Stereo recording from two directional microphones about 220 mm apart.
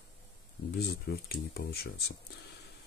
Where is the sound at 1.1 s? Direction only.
45° left (ahead or behind).